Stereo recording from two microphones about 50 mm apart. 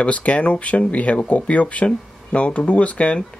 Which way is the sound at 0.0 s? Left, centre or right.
Left.